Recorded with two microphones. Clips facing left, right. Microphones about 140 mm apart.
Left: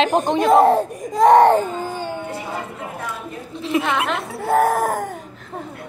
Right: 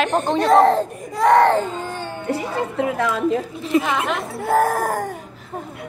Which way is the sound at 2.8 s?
90° right.